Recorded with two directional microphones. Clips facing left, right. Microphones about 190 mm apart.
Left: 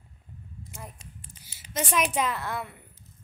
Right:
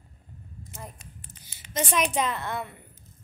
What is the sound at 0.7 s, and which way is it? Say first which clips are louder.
A woman's voice: right 2 dB; 10° left (ahead or behind).